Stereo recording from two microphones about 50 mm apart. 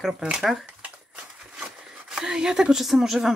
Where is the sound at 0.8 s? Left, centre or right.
Centre.